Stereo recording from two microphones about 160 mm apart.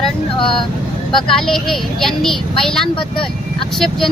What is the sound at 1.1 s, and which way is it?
A woman's voice, 5° left (ahead or behind).